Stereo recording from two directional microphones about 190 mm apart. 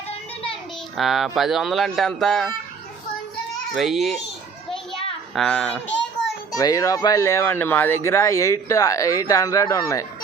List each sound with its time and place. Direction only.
0.9 s speech: centre (ahead or behind)
3.8 s speech: centre (ahead or behind)
5.3 s speech: 5° left (ahead or behind)
6.6 s speech: 20° left (ahead or behind)